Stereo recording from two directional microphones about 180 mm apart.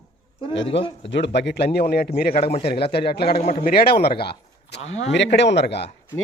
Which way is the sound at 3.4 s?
40° left (ahead or behind).